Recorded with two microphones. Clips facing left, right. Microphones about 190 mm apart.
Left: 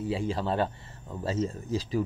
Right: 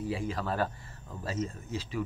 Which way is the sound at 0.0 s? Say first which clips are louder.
Left 4 dB; 25° left (ahead or behind).